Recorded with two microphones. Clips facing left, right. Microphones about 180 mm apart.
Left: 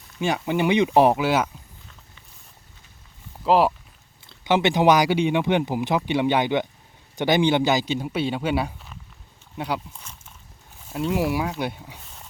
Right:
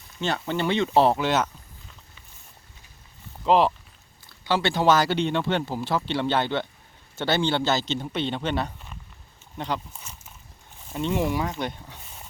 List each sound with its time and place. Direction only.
0.2 s speech: 10° left (ahead or behind)
3.4 s speech: 5° left (ahead or behind)
4.3 s speech: 20° left (ahead or behind)
10.0 s a sound: 5° right (ahead or behind)
10.8 s speech: 5° left (ahead or behind)